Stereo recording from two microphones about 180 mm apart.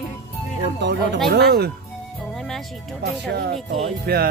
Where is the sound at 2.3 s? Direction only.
Centre (ahead or behind).